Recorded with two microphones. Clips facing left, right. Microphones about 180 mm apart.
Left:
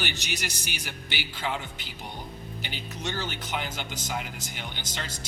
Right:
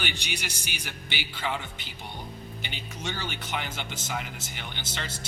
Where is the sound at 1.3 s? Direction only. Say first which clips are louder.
Even; 10° left (ahead or behind).